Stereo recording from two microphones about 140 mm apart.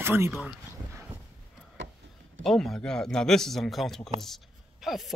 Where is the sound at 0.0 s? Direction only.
15° right (ahead or behind).